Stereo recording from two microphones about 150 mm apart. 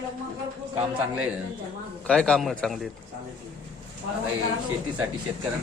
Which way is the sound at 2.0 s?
5° left (ahead or behind).